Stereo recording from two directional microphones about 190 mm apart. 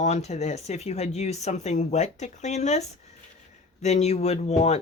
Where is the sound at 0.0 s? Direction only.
35° left (ahead or behind).